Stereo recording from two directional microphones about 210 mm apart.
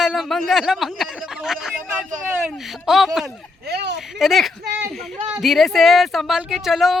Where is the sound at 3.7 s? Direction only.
50° right (ahead or behind).